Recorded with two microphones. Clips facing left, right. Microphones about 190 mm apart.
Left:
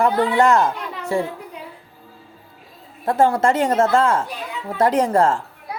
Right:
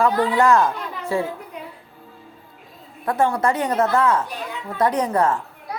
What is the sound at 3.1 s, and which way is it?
Speech, 30° left (ahead or behind).